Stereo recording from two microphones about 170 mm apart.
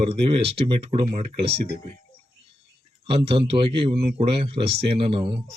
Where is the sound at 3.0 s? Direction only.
35° right (ahead or behind).